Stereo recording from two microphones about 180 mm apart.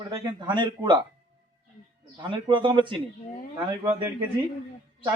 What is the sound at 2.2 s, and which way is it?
Speech, 25° right (ahead or behind).